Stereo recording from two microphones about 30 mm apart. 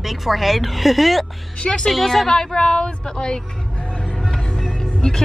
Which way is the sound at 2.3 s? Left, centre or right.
Centre.